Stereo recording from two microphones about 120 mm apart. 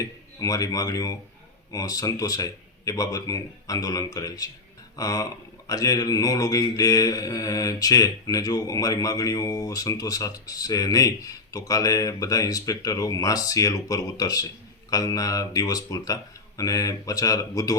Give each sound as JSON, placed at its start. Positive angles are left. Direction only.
{"t": 0.0, "sound": "speech", "side_deg": 30}